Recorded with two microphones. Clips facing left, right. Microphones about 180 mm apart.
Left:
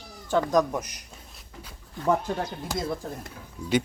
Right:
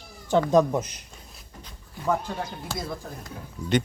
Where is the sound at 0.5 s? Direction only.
25° right (ahead or behind).